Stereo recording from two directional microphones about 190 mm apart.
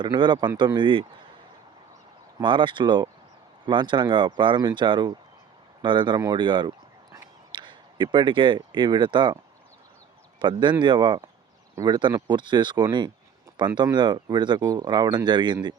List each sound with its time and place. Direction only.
0.0 s speech: 25° right (ahead or behind)
2.4 s speech: 25° right (ahead or behind)
10.4 s speech: 25° right (ahead or behind)